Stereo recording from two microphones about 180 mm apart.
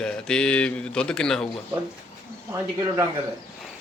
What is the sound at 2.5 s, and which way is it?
Speech, 15° right (ahead or behind).